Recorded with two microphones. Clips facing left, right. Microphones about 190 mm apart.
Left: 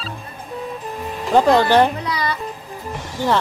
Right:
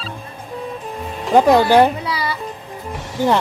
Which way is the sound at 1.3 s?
10° right (ahead or behind).